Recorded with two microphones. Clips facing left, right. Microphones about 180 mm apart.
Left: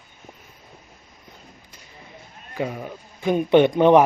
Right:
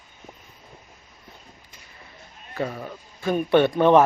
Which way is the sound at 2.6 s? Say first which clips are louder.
Left 1 dB; 10° left (ahead or behind).